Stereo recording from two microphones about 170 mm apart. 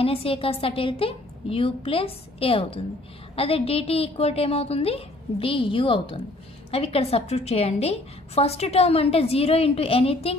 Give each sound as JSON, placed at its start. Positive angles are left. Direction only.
{"t": 0.0, "sound": "a woman's voice", "side_deg": 35}